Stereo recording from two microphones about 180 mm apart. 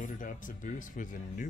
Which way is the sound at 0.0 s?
45° left (ahead or behind).